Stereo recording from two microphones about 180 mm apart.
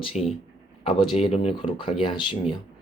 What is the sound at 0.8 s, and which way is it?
A man's voice, 30° left (ahead or behind).